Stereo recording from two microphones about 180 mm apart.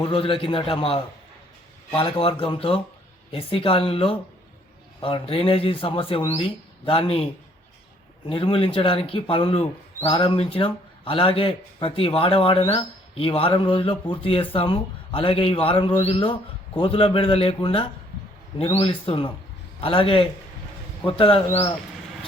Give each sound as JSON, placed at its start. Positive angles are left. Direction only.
{"t": 0.0, "sound": "a man's voice", "side_deg": 30}
{"t": 8.3, "sound": "a man's voice", "side_deg": 30}